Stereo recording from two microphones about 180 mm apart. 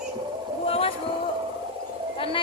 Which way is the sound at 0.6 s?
35° left (ahead or behind).